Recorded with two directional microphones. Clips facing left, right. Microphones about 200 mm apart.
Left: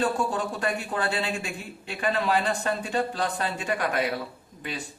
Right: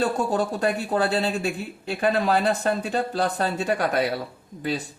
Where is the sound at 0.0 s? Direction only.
40° right (ahead or behind).